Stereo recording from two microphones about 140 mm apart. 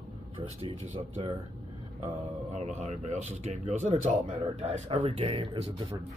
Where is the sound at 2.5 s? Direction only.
55° right (ahead or behind).